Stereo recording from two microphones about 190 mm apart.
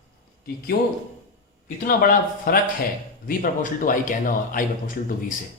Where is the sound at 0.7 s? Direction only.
55° left (ahead or behind).